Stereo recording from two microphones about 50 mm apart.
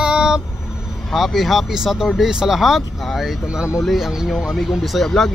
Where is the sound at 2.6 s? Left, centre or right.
Centre.